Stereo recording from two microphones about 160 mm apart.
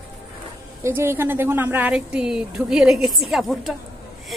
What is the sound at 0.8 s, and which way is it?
A woman's voice, 15° right (ahead or behind).